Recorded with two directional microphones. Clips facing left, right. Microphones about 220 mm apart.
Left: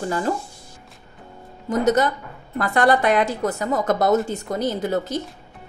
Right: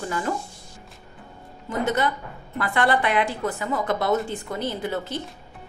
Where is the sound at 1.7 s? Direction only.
40° left (ahead or behind).